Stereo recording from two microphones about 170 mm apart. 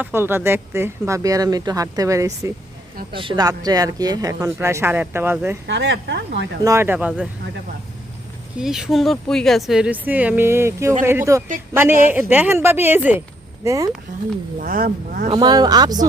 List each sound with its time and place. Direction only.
0.0 s speech: 15° right (ahead or behind)
3.1 s speech: 30° right (ahead or behind); by 5.5 s 15° right (ahead or behind)
5.6 s speech: 90° right
6.7 s speech: 15° right (ahead or behind)
8.5 s speech: 5° right (ahead or behind); by 13.9 s 20° right (ahead or behind)
14.6 s speech: 55° right (ahead or behind)
15.3 s speech: 25° right (ahead or behind)